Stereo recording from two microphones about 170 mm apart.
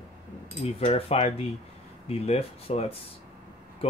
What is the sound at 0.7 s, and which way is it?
Speech, 35° left (ahead or behind).